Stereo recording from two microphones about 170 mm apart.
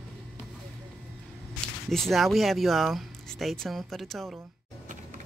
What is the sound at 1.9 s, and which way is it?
Speech, centre (ahead or behind).